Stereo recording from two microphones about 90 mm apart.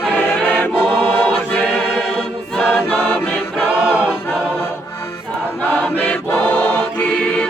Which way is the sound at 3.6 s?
15° right (ahead or behind).